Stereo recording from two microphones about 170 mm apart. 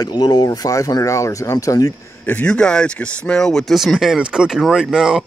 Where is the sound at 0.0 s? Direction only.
25° left (ahead or behind).